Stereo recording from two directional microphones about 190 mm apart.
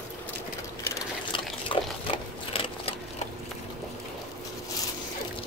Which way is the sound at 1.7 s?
30° left (ahead or behind).